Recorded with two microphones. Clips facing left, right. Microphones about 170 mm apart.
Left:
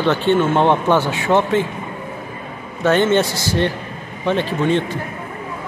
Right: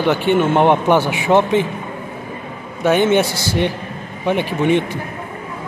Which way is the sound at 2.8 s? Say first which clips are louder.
Right 1 dB; 10° right (ahead or behind).